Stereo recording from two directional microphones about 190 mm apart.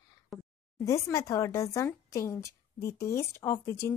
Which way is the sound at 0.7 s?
15° left (ahead or behind).